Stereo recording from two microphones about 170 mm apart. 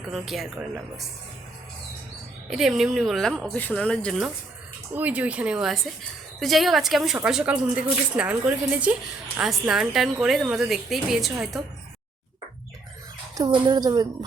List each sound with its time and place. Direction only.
0.1 s a woman's voice: centre (ahead or behind)
2.5 s a woman's voice: centre (ahead or behind)
4.9 s a woman's voice: 10° right (ahead or behind)
13.3 s a woman's voice: 25° right (ahead or behind)